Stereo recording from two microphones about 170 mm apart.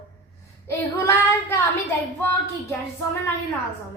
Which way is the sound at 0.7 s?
15° left (ahead or behind).